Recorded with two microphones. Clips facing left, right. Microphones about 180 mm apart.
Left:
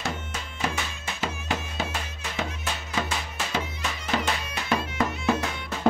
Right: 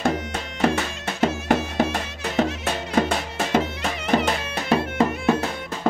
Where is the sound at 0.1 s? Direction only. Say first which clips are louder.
Right 8 dB; 75° right (ahead or behind); by 3.6 s 50° right (ahead or behind).